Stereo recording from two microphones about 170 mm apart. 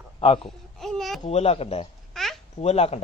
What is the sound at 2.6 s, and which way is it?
Speech, 40° left (ahead or behind).